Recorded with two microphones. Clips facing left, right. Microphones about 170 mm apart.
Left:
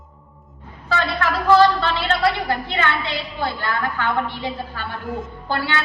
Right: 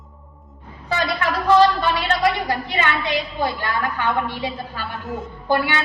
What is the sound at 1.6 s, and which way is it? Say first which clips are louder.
A woman's voice: even; 15° right (ahead or behind).